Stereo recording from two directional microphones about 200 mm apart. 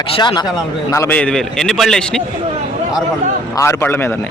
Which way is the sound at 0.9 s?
10° left (ahead or behind).